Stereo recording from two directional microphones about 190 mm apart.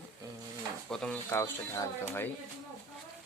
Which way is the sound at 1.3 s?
15° left (ahead or behind).